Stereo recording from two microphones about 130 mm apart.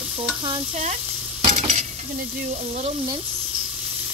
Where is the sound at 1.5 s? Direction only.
60° right (ahead or behind).